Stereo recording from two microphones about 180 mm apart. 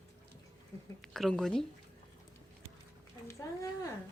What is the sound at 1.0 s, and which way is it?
Speech, centre (ahead or behind).